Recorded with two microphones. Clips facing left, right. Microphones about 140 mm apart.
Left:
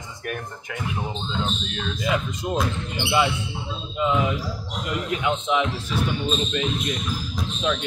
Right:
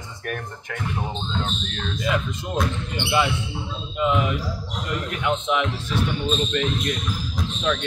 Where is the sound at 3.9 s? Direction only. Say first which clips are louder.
Even; 25° left (ahead or behind).